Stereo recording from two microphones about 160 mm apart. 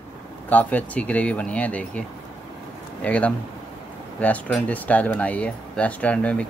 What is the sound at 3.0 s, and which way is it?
Speech, 10° left (ahead or behind).